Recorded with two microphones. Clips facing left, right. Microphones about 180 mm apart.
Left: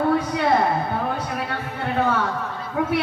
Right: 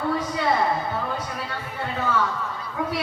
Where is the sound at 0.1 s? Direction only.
60° left (ahead or behind).